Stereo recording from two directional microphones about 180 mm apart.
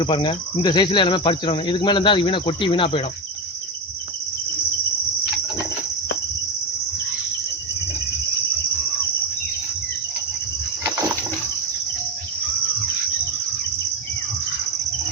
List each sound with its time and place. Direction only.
0.0 s cricket: 25° left (ahead or behind)